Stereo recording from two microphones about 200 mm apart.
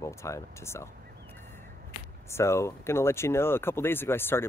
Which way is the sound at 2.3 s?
15° left (ahead or behind).